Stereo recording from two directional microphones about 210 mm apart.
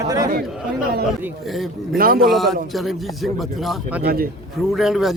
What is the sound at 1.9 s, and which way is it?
Speech, 45° right (ahead or behind).